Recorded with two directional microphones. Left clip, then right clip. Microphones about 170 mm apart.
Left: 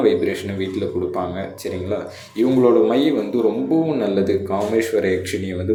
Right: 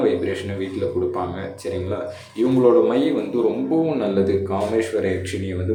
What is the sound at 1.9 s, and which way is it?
Speech, 15° left (ahead or behind).